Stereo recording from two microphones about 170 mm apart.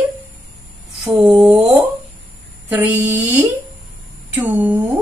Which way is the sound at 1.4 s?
10° right (ahead or behind).